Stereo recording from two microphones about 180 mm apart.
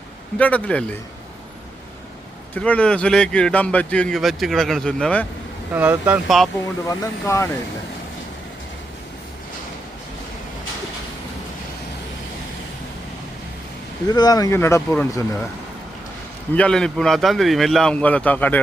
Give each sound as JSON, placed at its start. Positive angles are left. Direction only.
{"t": 0.3, "sound": "speech", "side_deg": 10}
{"t": 2.6, "sound": "speech", "side_deg": 5}
{"t": 5.7, "sound": "speech", "side_deg": -10}
{"t": 6.8, "sound": "speech", "side_deg": 15}
{"t": 14.1, "sound": "speech", "side_deg": 20}
{"t": 16.6, "sound": "speech", "side_deg": 5}